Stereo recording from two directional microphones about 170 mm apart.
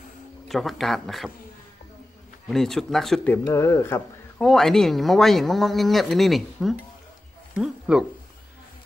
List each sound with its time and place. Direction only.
0.5 s speech: centre (ahead or behind)
2.4 s speech: centre (ahead or behind)
3.4 s speech: 15° left (ahead or behind)
4.4 s speech: centre (ahead or behind)